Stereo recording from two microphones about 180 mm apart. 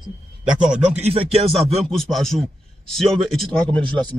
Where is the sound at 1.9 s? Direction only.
Centre (ahead or behind).